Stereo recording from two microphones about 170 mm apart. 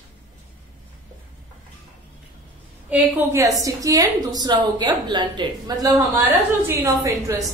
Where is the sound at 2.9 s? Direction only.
10° right (ahead or behind).